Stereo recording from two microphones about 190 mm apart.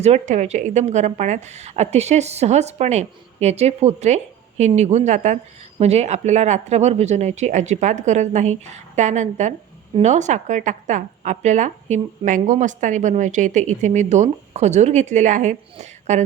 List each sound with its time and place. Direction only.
0.0 s speech: 35° right (ahead or behind)